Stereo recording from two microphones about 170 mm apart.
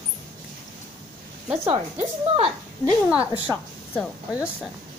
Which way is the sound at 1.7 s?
35° right (ahead or behind).